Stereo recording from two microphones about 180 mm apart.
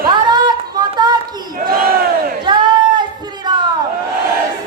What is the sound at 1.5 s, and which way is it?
Battle cry, 50° right (ahead or behind).